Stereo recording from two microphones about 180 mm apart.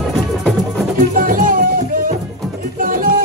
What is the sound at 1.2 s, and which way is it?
Music, 50° right (ahead or behind).